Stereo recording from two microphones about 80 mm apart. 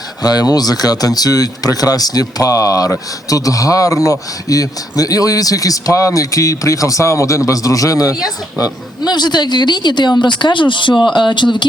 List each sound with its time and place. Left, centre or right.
0.2 s a man's voice: left